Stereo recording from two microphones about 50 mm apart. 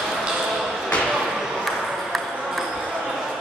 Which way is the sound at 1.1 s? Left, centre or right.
Centre.